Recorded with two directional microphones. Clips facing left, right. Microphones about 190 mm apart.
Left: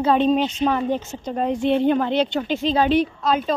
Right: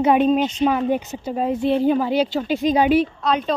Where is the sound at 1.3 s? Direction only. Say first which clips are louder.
Even; 5° right (ahead or behind).